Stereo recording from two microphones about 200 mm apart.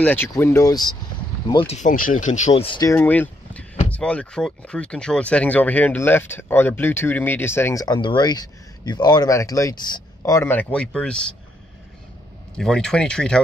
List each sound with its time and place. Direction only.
0.0 s speech: 10° left (ahead or behind); by 1.8 s 25° left (ahead or behind)
1.8 s speech: 40° left (ahead or behind); by 2.9 s 25° left (ahead or behind)
2.9 s speech: 10° left (ahead or behind)
12.5 s speech: 5° left (ahead or behind)